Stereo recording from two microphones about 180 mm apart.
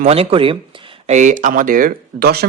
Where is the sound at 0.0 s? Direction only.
35° right (ahead or behind).